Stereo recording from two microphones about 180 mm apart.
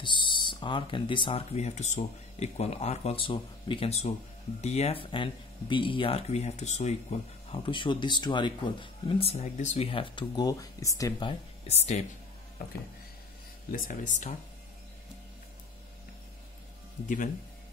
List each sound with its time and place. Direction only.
0.0 s speech: 25° left (ahead or behind)
9.2 s speech: 35° left (ahead or behind)
13.7 s speech: 50° left (ahead or behind)